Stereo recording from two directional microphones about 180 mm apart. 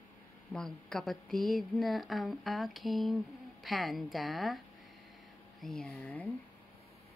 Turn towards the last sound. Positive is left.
turn(degrees=10)  # may be behind; listen again after turning